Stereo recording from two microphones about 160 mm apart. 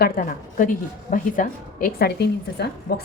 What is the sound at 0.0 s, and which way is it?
A woman's voice, 55° left (ahead or behind).